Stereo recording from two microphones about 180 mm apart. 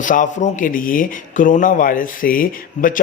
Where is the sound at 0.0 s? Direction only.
45° left (ahead or behind).